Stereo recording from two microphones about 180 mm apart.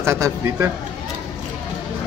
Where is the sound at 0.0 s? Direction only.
15° right (ahead or behind).